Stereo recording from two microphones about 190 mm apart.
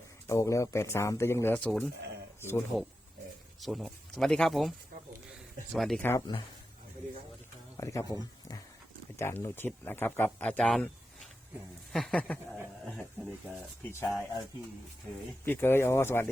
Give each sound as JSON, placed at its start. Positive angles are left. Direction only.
{"t": 0.3, "sound": "speech", "side_deg": 15}
{"t": 3.6, "sound": "speech", "side_deg": 0}
{"t": 5.7, "sound": "speech", "side_deg": 0}
{"t": 6.1, "sound": "speech", "side_deg": 20}
{"t": 7.8, "sound": "speech", "side_deg": 15}
{"t": 11.9, "sound": "speech", "side_deg": 0}
{"t": 14.0, "sound": "speech", "side_deg": 0}
{"t": 15.4, "sound": "speech", "side_deg": 10}